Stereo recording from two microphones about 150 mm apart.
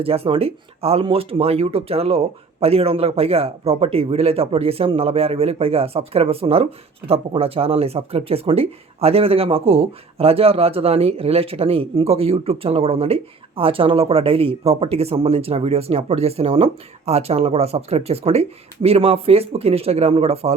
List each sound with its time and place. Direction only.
0.0 s speech: 40° right (ahead or behind)